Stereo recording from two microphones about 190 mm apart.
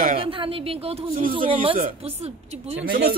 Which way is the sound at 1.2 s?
50° right (ahead or behind).